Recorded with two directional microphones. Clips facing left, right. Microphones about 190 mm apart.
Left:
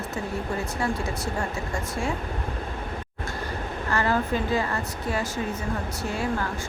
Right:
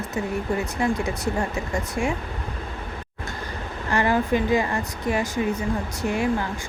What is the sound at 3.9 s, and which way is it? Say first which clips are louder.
Speech: right 4 dB; 15° right (ahead or behind).